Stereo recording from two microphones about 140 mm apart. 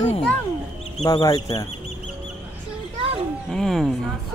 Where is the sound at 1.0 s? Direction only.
30° left (ahead or behind).